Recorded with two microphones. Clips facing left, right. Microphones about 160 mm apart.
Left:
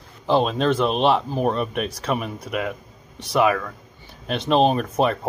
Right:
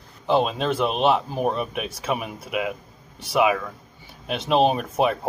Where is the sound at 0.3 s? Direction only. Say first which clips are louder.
Left 2 dB; 5° right (ahead or behind).